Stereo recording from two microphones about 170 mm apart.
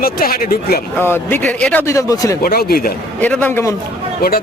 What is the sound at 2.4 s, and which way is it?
Speech, 65° left (ahead or behind).